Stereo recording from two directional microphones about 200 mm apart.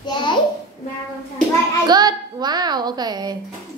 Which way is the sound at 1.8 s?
20° right (ahead or behind).